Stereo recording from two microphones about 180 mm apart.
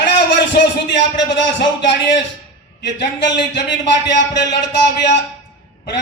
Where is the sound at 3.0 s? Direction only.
75° left (ahead or behind).